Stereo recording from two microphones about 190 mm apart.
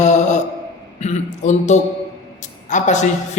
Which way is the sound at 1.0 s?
35° left (ahead or behind).